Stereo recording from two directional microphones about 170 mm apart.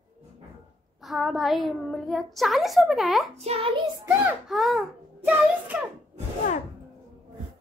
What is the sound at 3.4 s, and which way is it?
Speech, 35° right (ahead or behind).